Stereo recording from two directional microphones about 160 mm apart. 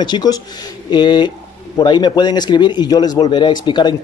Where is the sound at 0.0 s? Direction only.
25° left (ahead or behind).